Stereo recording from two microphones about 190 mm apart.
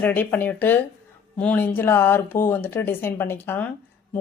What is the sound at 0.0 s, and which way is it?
Speech, 10° left (ahead or behind).